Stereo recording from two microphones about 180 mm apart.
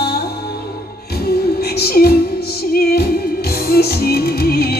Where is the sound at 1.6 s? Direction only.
60° left (ahead or behind).